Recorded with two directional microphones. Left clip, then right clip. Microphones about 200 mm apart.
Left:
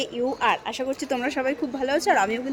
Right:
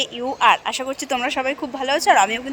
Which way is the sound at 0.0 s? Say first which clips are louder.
Right 6 dB; centre (ahead or behind).